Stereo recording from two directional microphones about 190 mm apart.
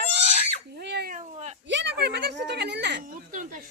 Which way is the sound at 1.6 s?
70° right (ahead or behind).